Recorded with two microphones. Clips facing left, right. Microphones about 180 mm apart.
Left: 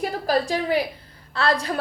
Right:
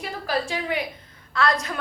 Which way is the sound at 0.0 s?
40° left (ahead or behind).